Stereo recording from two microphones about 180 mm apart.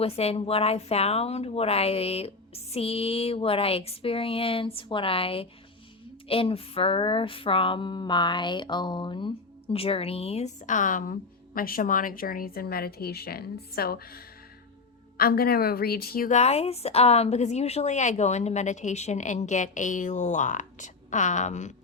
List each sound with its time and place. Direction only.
0.0 s speech: 35° left (ahead or behind)